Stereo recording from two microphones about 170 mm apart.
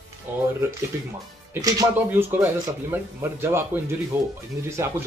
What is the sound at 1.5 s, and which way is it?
Speech, 20° right (ahead or behind).